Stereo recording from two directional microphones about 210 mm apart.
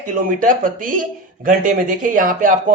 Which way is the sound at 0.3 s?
40° right (ahead or behind).